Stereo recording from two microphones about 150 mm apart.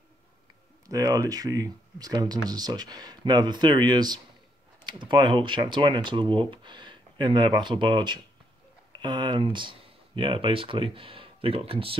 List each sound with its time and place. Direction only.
0.8 s speech: 25° right (ahead or behind)